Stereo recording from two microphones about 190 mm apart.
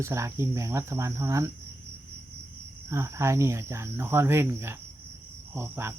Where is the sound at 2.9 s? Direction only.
15° right (ahead or behind).